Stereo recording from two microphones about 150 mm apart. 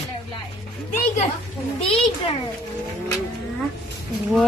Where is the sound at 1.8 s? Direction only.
40° left (ahead or behind).